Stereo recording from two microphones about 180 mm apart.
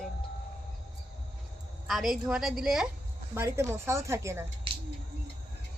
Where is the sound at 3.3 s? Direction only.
15° right (ahead or behind).